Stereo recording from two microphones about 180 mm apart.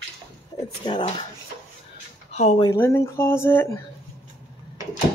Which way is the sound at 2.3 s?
40° left (ahead or behind).